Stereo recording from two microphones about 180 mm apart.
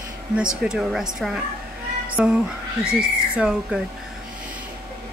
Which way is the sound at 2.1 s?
5° right (ahead or behind).